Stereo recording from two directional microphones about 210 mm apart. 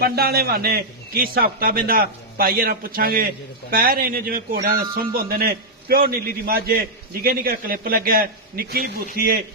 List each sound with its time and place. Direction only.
0.0 s speech: 50° right (ahead or behind)